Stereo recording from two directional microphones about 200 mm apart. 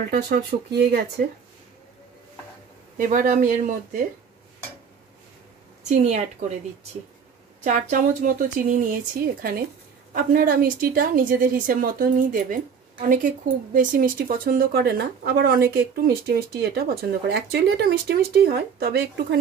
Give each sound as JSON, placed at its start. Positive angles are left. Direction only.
{"t": 0.1, "sound": "speech", "side_deg": -45}
{"t": 3.0, "sound": "speech", "side_deg": -40}
{"t": 5.9, "sound": "speech", "side_deg": -35}
{"t": 7.6, "sound": "speech", "side_deg": -40}
{"t": 13.7, "sound": "speech", "side_deg": -40}